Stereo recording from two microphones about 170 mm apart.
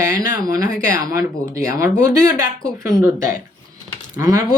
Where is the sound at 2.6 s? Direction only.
5° left (ahead or behind).